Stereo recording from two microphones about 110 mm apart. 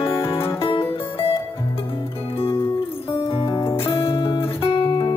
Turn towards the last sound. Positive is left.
turn(degrees=50)  # may be behind; listen again after turning